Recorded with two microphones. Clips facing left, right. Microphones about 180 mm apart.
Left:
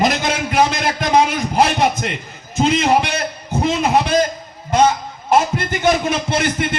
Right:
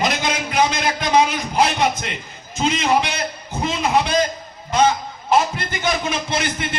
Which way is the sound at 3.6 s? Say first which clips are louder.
Left 3 dB; 50° left (ahead or behind).